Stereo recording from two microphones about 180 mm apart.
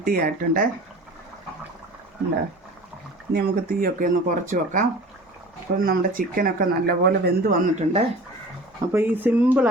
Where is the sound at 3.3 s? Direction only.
55° right (ahead or behind).